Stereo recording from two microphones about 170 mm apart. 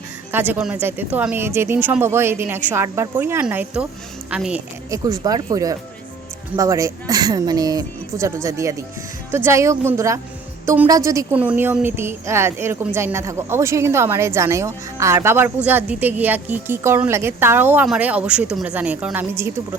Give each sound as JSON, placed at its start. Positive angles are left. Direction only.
{"t": 0.3, "sound": "a woman's voice", "side_deg": -10}
{"t": 4.9, "sound": "a woman's voice", "side_deg": -20}